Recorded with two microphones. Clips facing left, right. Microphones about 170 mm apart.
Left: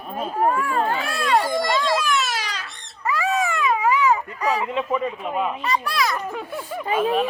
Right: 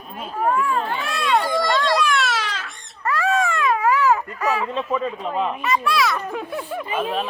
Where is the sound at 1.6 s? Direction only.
5° left (ahead or behind).